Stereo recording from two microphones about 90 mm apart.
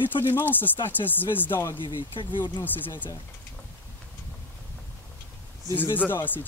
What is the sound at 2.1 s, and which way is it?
Speech, 60° left (ahead or behind).